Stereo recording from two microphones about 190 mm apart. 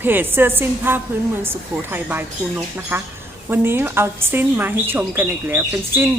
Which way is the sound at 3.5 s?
10° right (ahead or behind).